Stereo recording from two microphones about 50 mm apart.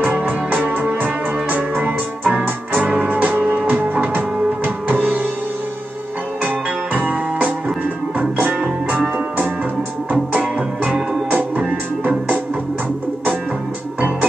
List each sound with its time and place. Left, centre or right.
0.0 s music: right
6.4 s music: right
10.3 s music: right